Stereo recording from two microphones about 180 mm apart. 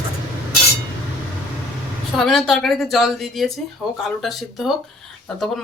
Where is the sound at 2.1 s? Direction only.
Centre (ahead or behind).